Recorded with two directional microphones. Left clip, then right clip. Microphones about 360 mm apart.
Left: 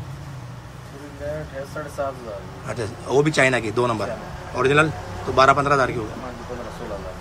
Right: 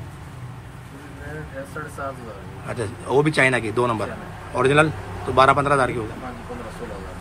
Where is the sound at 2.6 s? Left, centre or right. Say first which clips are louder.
Right 1 dB; centre.